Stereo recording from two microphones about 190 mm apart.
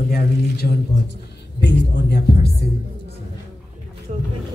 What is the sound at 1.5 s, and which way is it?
Speech, 60° left (ahead or behind).